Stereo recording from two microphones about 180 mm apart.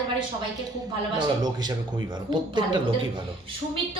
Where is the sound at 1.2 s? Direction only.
20° right (ahead or behind).